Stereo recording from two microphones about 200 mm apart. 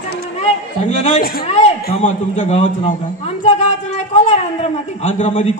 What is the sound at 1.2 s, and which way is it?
Speech, 50° left (ahead or behind).